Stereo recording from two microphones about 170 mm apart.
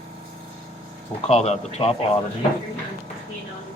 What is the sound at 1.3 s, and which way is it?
Speech, 40° left (ahead or behind).